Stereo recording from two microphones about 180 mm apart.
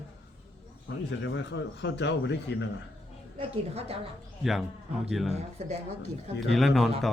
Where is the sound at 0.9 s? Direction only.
80° left.